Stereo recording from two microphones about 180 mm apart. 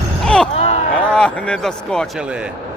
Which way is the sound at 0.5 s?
35° left (ahead or behind).